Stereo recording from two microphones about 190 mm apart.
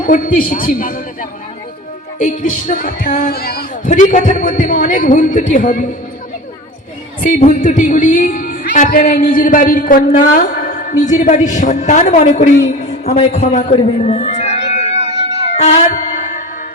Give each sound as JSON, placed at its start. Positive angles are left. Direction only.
{"t": 0.0, "sound": "speech", "side_deg": 45}
{"t": 7.2, "sound": "speech", "side_deg": 40}
{"t": 12.8, "sound": "music", "side_deg": 35}